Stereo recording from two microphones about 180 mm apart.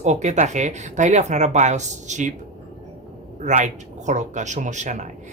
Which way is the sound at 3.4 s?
40° right (ahead or behind).